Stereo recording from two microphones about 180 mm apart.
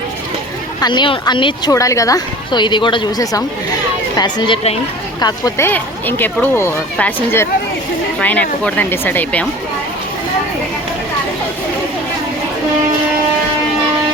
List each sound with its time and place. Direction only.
0.8 s speech: 25° left (ahead or behind)
5.2 s speech: 15° left (ahead or behind)